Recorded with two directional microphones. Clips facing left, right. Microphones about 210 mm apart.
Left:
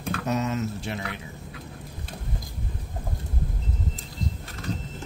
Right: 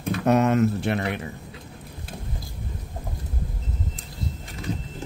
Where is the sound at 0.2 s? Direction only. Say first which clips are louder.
Right 9 dB; 60° right (ahead or behind).